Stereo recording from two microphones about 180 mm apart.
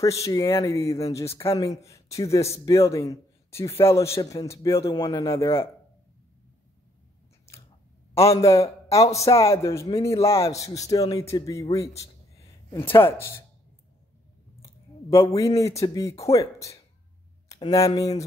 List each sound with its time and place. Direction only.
0.0 s speech: 15° left (ahead or behind)
8.4 s a man's voice: 15° left (ahead or behind)
14.6 s speech: 15° left (ahead or behind)